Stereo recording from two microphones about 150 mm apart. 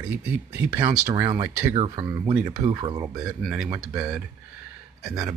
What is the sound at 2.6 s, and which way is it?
Speech, 25° right (ahead or behind).